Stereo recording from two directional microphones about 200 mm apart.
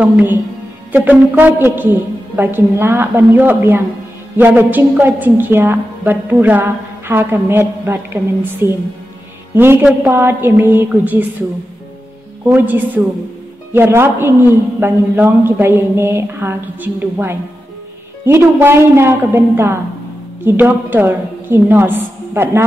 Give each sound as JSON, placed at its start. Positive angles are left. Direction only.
{"t": 0.0, "sound": "a woman's voice", "side_deg": -10}
{"t": 12.4, "sound": "a woman's voice", "side_deg": -10}